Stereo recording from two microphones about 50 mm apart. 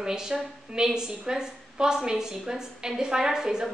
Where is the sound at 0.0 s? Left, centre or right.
Centre.